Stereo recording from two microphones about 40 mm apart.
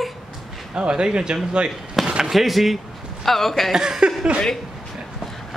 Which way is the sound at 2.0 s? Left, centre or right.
Centre.